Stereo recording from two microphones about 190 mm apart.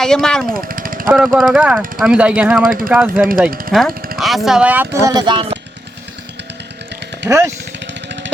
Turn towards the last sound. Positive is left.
turn(degrees=-15)  # may be behind; listen again after turning